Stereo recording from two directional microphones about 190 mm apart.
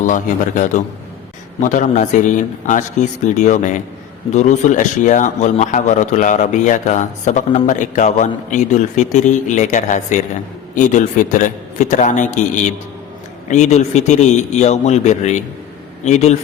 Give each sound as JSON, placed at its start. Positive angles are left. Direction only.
{"t": 0.0, "sound": "a man's voice", "side_deg": 40}